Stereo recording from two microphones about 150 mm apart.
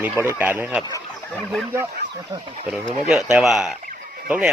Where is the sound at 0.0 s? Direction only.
15° right (ahead or behind).